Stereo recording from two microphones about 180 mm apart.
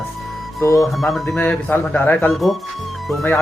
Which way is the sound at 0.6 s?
15° left (ahead or behind).